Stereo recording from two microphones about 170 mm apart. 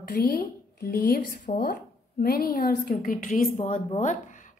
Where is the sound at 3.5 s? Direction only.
40° left (ahead or behind).